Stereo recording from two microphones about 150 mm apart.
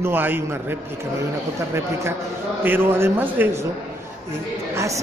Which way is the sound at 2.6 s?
15° right (ahead or behind).